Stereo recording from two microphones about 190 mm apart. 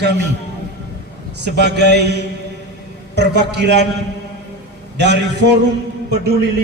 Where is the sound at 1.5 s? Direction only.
60° right (ahead or behind).